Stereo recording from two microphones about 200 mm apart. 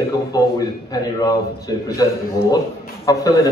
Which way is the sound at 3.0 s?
15° left (ahead or behind).